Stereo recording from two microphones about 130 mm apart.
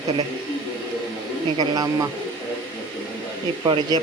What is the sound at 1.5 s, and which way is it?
Speech, 30° right (ahead or behind).